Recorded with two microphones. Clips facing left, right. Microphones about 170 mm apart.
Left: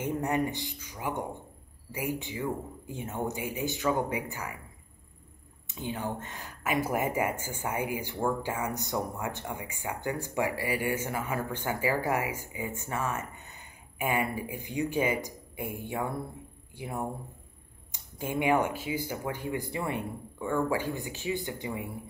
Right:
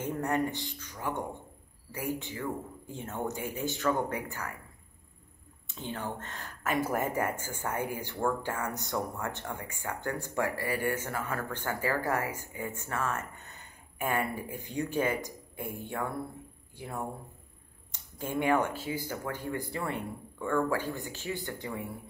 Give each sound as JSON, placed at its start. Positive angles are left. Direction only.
{"t": 0.0, "sound": "speech", "side_deg": 15}
{"t": 5.8, "sound": "speech", "side_deg": 15}
{"t": 18.1, "sound": "speech", "side_deg": 15}